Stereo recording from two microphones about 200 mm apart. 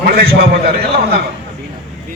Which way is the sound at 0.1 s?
50° right (ahead or behind).